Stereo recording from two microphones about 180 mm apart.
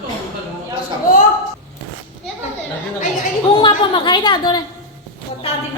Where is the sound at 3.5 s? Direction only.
25° left (ahead or behind).